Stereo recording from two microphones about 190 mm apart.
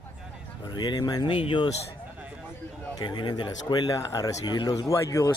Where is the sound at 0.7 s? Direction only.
20° left (ahead or behind).